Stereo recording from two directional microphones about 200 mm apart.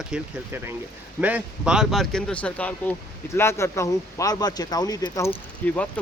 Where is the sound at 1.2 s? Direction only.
5° right (ahead or behind); by 5.3 s 15° left (ahead or behind).